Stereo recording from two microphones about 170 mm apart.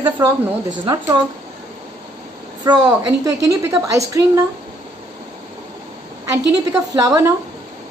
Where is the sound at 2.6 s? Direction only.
25° right (ahead or behind).